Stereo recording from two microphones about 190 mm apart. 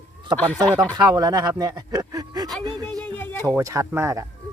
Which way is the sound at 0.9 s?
20° right (ahead or behind).